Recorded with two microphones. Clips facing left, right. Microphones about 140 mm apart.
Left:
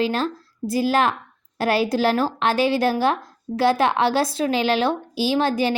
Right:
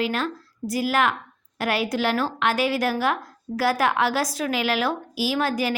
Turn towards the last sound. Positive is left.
turn(degrees=25)  # may be behind; listen again after turning